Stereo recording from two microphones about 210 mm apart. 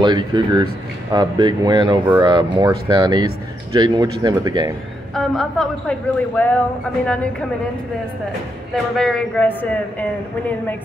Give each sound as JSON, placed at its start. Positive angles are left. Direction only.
{"t": 0.0, "sound": "speech", "side_deg": -20}
{"t": 5.1, "sound": "a man's voice", "side_deg": 0}
{"t": 8.9, "sound": "a woman's voice", "side_deg": 5}